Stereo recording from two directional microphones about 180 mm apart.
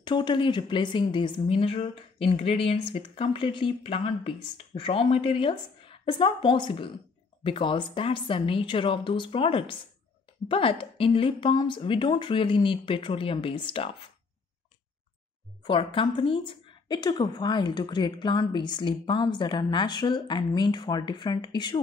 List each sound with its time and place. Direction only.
0.0 s a woman's voice: 25° left (ahead or behind)
15.6 s a woman's voice: 30° left (ahead or behind)